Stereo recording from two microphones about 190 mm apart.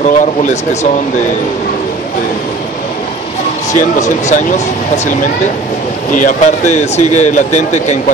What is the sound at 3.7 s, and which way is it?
Speech, 40° left (ahead or behind).